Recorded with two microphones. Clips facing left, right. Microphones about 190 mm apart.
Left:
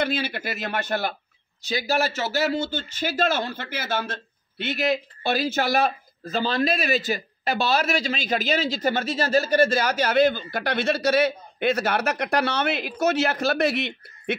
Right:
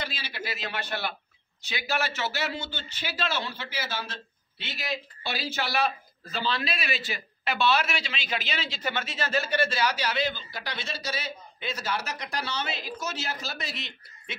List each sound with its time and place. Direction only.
0.0 s speech: 55° left (ahead or behind)